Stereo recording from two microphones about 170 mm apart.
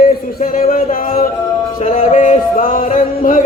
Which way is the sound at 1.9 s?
40° left (ahead or behind).